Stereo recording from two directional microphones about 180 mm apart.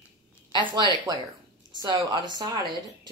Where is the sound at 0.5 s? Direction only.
25° right (ahead or behind).